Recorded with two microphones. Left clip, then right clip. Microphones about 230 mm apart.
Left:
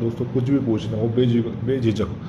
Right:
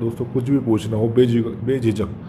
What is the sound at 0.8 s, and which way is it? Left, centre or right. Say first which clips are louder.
A man's voice: right 4 dB; right.